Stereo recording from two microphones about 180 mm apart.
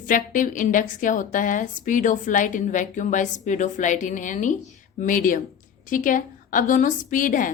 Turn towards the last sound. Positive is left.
turn(degrees=50)  # may be behind; listen again after turning